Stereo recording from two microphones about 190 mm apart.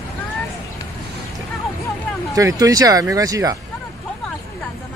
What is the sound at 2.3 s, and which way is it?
Speech, 20° right (ahead or behind).